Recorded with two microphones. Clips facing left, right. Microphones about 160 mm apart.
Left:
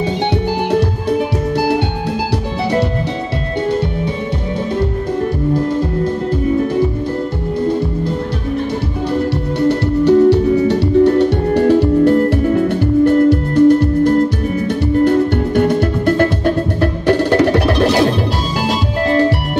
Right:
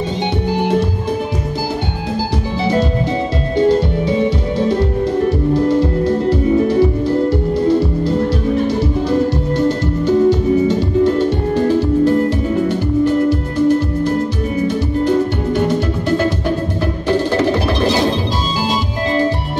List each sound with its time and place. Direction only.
9.7 s music: 70° left (ahead or behind)